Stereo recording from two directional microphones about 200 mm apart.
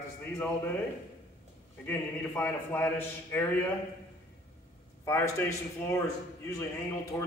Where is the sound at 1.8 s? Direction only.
10° left (ahead or behind).